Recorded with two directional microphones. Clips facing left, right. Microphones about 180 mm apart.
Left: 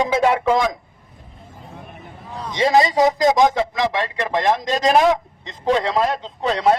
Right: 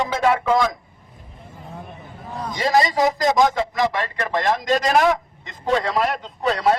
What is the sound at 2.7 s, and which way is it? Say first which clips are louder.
Speech: left 2 dB; 20° left (ahead or behind).